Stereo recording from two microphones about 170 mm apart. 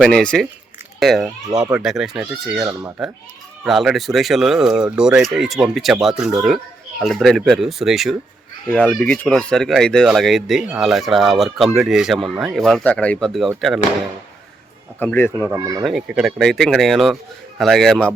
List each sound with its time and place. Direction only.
0.0 s speech: 5° left (ahead or behind)
14.9 s speech: 10° left (ahead or behind)
15.4 s speech: 20° right (ahead or behind)
15.8 s speech: centre (ahead or behind)